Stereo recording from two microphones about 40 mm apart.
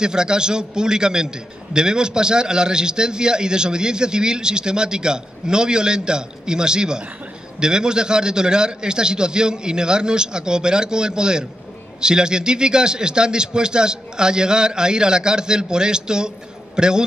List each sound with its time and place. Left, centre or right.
0.0 s a man's voice: centre